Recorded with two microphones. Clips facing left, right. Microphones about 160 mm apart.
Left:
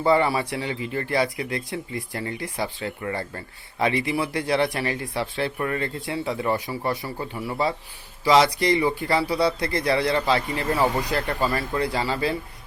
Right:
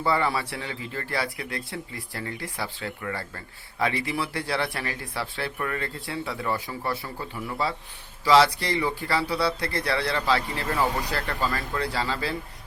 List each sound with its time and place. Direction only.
0.0 s speech: 20° left (ahead or behind)
5.5 s speech: 30° left (ahead or behind)
5.8 s a man's voice: 20° left (ahead or behind)